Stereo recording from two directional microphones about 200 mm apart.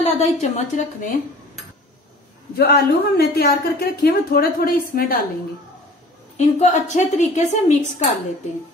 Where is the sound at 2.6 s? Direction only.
55° left (ahead or behind).